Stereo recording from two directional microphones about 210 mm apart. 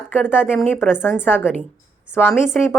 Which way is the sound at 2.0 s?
5° right (ahead or behind).